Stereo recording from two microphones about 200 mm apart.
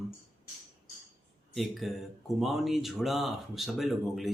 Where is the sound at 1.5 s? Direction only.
Centre (ahead or behind).